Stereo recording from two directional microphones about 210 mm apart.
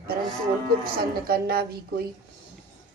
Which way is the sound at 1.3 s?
45° right (ahead or behind).